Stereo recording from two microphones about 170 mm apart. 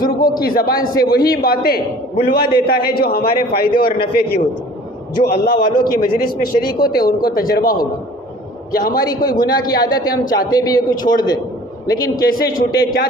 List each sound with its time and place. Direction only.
0.0 s a man's voice: 60° left (ahead or behind)
6.7 s a man's voice: 25° left (ahead or behind)
7.0 s a man's voice: 60° left (ahead or behind)
9.0 s a man's voice: 25° left (ahead or behind)
12.1 s a man's voice: 60° left (ahead or behind)